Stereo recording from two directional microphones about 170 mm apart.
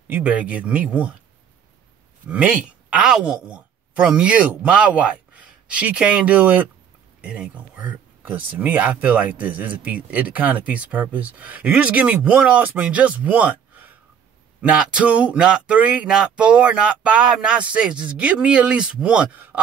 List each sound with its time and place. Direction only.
0.1 s speech: 10° right (ahead or behind)
2.2 s a woman's voice: 10° right (ahead or behind)